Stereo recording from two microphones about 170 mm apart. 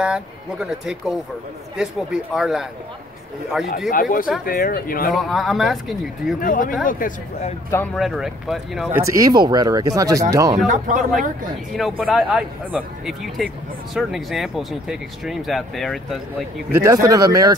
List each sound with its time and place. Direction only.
0.0 s speech: 5° right (ahead or behind)
3.9 s speech: 55° left (ahead or behind)
5.1 s speech: centre (ahead or behind)
6.4 s speech: 50° left (ahead or behind)
7.7 s speech: 10° left (ahead or behind)
8.0 s speech: centre (ahead or behind)
8.9 s speech: 20° right (ahead or behind)
11.0 s speech: centre (ahead or behind)
16.7 s speech: 20° right (ahead or behind)